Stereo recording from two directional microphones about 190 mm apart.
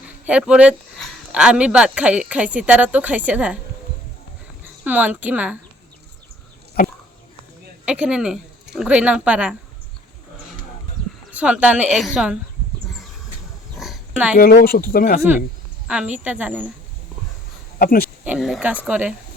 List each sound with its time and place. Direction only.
0.3 s speech: 5° right (ahead or behind)
4.8 s a woman's voice: 10° right (ahead or behind)
7.9 s speech: 5° right (ahead or behind)
11.3 s speech: 5° right (ahead or behind)
13.7 s a sound: centre (ahead or behind)
14.3 s speech: 50° left (ahead or behind)
15.9 s a woman's voice: 5° right (ahead or behind)
17.7 s a sound: 50° left (ahead or behind)
18.3 s a woman's voice: centre (ahead or behind)